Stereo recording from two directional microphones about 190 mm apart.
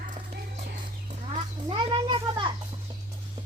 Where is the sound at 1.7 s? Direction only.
25° right (ahead or behind).